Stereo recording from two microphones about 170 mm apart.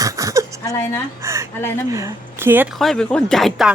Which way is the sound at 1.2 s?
15° right (ahead or behind).